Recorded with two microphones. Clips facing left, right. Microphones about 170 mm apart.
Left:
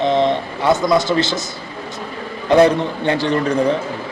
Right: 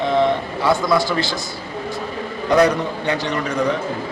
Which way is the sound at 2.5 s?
30° left (ahead or behind).